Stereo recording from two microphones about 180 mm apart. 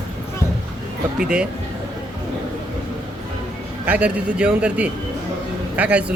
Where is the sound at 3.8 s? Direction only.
10° right (ahead or behind).